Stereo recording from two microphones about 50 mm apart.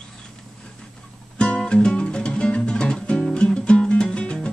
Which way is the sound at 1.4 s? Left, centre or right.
Centre.